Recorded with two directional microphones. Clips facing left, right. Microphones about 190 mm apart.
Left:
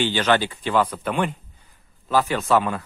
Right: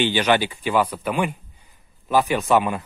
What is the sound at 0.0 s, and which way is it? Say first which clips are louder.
Speech: right 1 dB; 15° right (ahead or behind).